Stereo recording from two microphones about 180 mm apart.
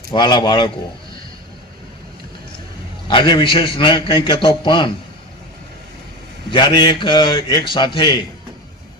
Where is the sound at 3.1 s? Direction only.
25° left (ahead or behind).